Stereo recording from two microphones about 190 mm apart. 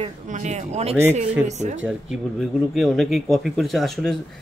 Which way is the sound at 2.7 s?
Centre (ahead or behind).